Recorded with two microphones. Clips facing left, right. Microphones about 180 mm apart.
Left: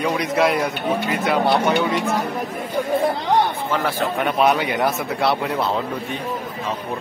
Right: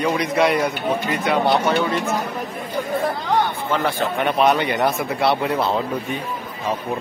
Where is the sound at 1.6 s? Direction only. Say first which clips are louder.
Left 1 dB; 15° left (ahead or behind).